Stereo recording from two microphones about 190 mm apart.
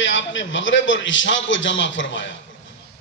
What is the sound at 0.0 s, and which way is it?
A man's voice, 80° left.